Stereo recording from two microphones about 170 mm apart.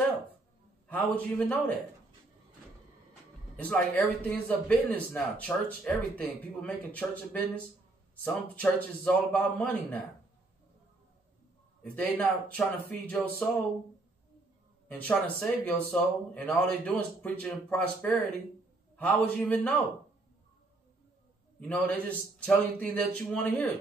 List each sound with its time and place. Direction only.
0.8 s speech: 10° left (ahead or behind)
3.5 s speech: 10° left (ahead or behind)
11.8 s speech: 10° left (ahead or behind)
14.9 s speech: 10° left (ahead or behind)
21.5 s speech: 10° left (ahead or behind)